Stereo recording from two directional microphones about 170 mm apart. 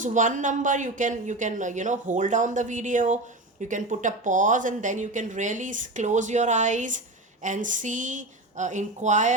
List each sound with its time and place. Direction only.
0.0 s speech: 50° right (ahead or behind)